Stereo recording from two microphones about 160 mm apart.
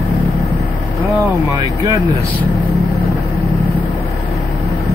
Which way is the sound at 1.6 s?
30° right (ahead or behind).